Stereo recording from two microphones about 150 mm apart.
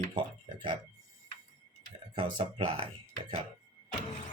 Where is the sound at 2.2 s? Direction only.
35° right (ahead or behind).